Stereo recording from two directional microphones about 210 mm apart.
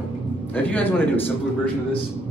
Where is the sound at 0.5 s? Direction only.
10° left (ahead or behind).